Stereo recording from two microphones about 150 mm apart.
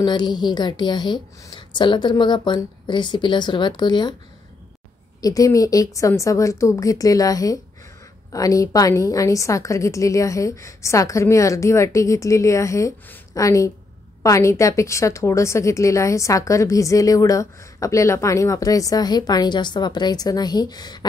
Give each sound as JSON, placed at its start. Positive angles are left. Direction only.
{"t": 0.0, "sound": "a woman's voice", "side_deg": 30}
{"t": 5.2, "sound": "a woman's voice", "side_deg": 25}